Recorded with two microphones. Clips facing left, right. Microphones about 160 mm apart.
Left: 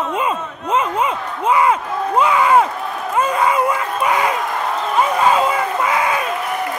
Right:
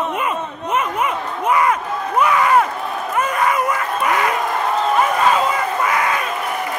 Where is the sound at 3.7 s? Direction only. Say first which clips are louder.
Left 1 dB; 15° left (ahead or behind).